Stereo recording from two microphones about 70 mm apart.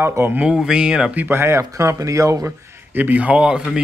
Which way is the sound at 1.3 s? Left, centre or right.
Right.